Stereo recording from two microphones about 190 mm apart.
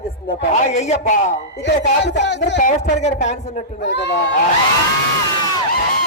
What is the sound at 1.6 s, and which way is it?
Speech, 65° left (ahead or behind).